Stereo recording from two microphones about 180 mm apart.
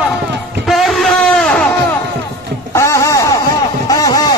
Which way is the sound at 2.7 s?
15° left (ahead or behind).